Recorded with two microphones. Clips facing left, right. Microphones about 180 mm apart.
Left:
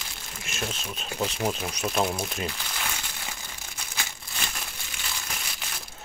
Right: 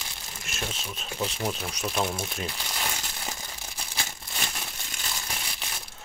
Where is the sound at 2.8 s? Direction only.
35° right (ahead or behind).